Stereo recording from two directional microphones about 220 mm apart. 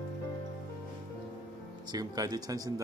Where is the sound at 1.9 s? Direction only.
20° right (ahead or behind).